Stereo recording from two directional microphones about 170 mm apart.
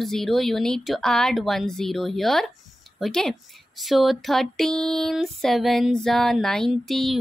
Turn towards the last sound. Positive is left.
turn(degrees=0)  # may be behind; listen again after turning